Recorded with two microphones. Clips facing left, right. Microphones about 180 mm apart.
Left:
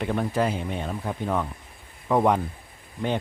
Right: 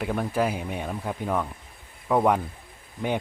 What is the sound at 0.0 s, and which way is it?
Speech, 5° right (ahead or behind).